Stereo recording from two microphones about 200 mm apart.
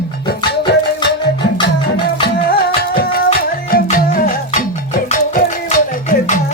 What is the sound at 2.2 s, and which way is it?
Music, 50° left (ahead or behind).